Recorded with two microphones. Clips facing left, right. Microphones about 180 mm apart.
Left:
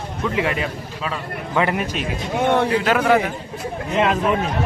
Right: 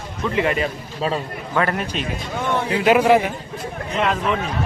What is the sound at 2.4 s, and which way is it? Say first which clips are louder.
Speech: left 6 dB; 60° left (ahead or behind).